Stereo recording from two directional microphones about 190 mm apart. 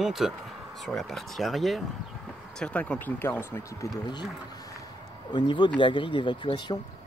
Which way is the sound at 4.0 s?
25° left (ahead or behind).